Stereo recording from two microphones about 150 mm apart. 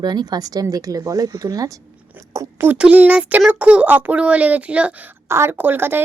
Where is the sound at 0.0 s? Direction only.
30° right (ahead or behind).